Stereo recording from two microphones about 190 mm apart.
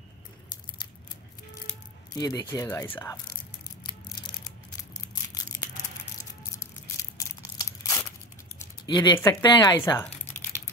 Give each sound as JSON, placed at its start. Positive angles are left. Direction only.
{"t": 2.1, "sound": "speech", "side_deg": 20}
{"t": 6.6, "sound": "a sound", "side_deg": 15}
{"t": 8.5, "sound": "speech", "side_deg": 20}